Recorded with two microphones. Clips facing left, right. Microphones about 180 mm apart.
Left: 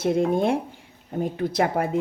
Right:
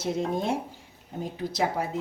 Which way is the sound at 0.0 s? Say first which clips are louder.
Left 7 dB; 60° left (ahead or behind).